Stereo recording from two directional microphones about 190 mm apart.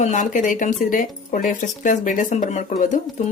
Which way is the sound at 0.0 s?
40° left (ahead or behind).